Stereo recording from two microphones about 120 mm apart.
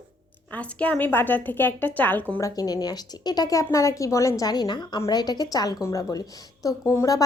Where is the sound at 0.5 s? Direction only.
10° left (ahead or behind).